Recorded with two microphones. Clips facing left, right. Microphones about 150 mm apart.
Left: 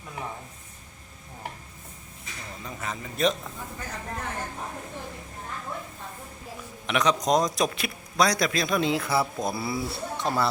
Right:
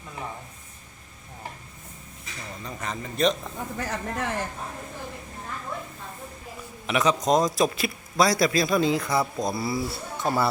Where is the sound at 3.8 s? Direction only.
90° right.